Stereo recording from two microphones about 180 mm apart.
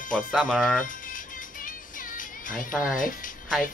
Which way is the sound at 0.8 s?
50° left (ahead or behind).